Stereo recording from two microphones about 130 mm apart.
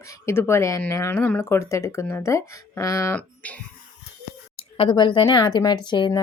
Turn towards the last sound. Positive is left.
turn(degrees=35)  # may be behind; listen again after turning